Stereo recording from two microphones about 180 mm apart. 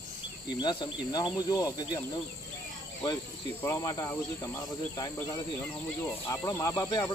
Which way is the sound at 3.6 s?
20° left (ahead or behind).